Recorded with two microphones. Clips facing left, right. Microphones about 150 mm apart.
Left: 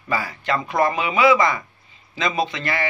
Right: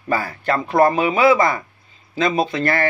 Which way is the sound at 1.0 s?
45° right (ahead or behind).